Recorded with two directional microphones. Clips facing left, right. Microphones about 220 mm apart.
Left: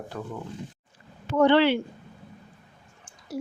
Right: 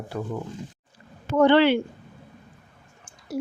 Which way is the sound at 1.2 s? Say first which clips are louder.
Right 2 dB; 50° right (ahead or behind).